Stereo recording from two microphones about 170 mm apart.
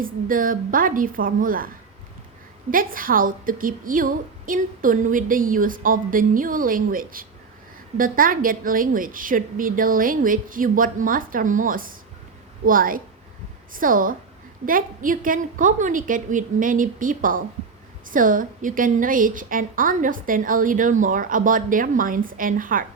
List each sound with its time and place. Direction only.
0.0 s a woman's voice: 55° right (ahead or behind)